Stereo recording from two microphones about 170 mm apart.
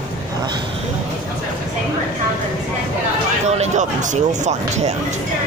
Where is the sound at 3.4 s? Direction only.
40° right (ahead or behind).